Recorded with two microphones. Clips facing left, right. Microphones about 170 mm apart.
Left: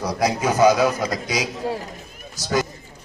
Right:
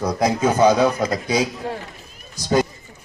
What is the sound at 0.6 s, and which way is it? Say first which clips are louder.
Speech: even; 10° left (ahead or behind).